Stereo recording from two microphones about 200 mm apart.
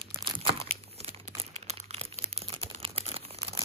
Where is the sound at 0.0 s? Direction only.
25° right (ahead or behind).